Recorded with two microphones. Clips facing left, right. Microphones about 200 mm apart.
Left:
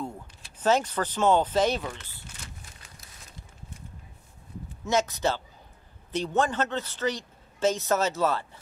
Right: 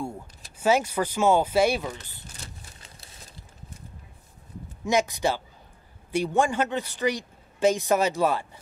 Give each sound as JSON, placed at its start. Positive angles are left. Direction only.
{"t": 0.6, "sound": "speech", "side_deg": -10}
{"t": 2.3, "sound": "a sound", "side_deg": -30}
{"t": 4.8, "sound": "speech", "side_deg": -15}